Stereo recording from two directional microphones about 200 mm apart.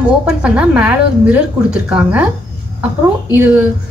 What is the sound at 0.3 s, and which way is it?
A woman's voice, 5° right (ahead or behind).